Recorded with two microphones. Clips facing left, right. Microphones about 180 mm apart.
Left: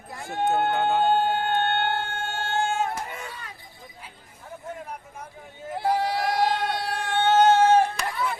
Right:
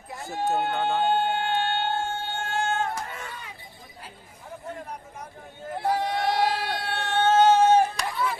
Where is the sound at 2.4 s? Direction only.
25° left (ahead or behind).